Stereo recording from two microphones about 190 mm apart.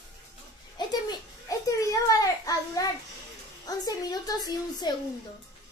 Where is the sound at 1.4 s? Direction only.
20° left (ahead or behind).